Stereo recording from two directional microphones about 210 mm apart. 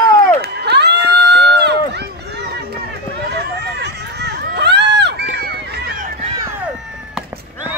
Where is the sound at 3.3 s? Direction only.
55° right (ahead or behind).